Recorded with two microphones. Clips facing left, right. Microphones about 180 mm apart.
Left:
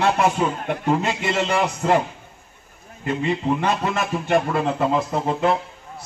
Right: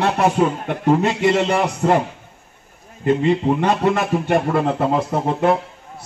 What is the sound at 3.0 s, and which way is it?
A man's voice, 55° right (ahead or behind).